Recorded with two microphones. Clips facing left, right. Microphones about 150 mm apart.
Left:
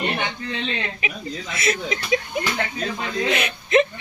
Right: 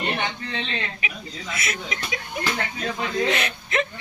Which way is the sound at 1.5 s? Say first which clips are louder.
Left 7 dB; 30° left (ahead or behind).